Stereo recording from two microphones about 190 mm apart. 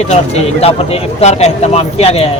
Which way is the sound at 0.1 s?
35° left (ahead or behind).